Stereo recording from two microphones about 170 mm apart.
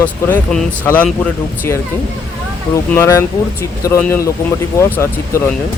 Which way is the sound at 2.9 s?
15° left (ahead or behind).